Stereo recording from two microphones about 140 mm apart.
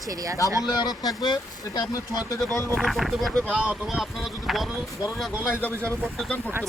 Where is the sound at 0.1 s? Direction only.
25° right (ahead or behind).